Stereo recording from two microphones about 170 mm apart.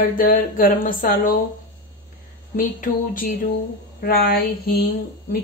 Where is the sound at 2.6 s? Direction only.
55° left (ahead or behind).